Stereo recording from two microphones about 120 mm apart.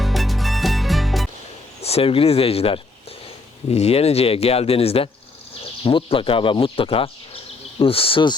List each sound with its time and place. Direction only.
0.0 s music: centre (ahead or behind)
1.8 s speech: 55° left (ahead or behind)